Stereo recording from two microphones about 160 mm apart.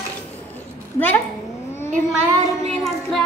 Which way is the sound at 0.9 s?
10° left (ahead or behind).